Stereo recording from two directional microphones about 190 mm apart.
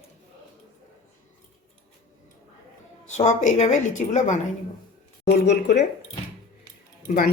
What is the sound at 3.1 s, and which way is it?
A woman's voice, 40° left (ahead or behind).